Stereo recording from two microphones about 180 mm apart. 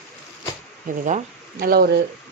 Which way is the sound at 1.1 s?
50° right (ahead or behind).